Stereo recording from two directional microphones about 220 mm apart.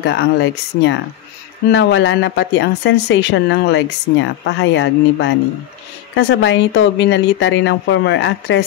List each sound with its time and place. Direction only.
0.0 s speech: 50° left (ahead or behind)